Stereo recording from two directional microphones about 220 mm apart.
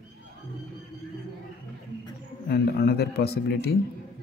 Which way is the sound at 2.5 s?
45° left (ahead or behind).